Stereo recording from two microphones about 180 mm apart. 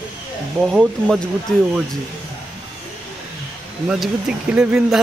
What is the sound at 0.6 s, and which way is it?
Speech, centre (ahead or behind).